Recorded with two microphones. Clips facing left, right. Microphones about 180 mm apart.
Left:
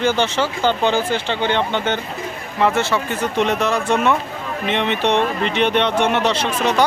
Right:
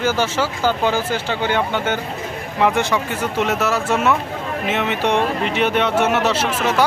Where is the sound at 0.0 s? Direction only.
5° right (ahead or behind).